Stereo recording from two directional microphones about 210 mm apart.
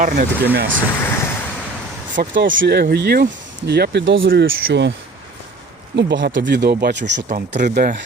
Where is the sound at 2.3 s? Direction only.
60° right (ahead or behind).